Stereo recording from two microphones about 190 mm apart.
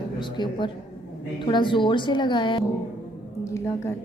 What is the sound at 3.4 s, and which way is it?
Speech, 15° left (ahead or behind).